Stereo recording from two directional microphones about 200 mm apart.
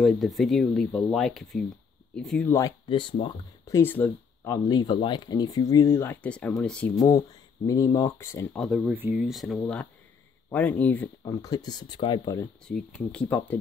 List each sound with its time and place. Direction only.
0.0 s speech: centre (ahead or behind)
2.9 s speech: 25° left (ahead or behind); by 4.6 s 10° left (ahead or behind)
4.6 s speech: 20° left (ahead or behind); by 6.9 s 5° left (ahead or behind)
7.0 s speech: 20° left (ahead or behind)
8.5 s speech: centre (ahead or behind)
11.4 s speech: 20° left (ahead or behind)
12.6 s speech: 5° left (ahead or behind)